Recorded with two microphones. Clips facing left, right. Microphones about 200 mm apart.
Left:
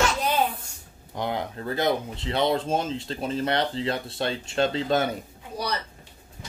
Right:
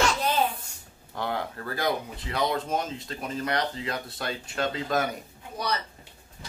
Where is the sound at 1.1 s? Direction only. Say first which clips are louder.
Left 2 dB; 20° left (ahead or behind).